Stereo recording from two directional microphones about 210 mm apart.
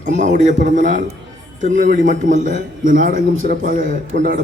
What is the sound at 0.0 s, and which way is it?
A man's voice, 35° right (ahead or behind).